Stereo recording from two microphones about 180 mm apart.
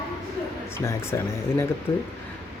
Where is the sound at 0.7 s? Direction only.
15° left (ahead or behind).